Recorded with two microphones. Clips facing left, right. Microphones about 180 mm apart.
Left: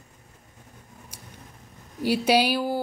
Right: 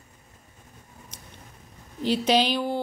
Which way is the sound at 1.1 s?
10° left (ahead or behind).